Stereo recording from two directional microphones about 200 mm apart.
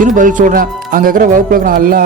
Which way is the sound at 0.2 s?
40° right (ahead or behind).